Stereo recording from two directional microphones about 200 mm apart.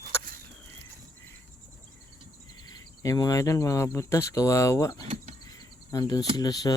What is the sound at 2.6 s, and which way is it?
Speech, 20° left (ahead or behind).